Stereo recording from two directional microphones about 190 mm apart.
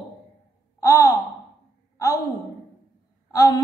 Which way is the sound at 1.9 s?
15° left (ahead or behind).